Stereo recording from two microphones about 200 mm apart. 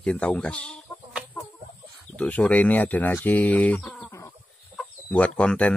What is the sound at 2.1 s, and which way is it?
Speech, 5° left (ahead or behind).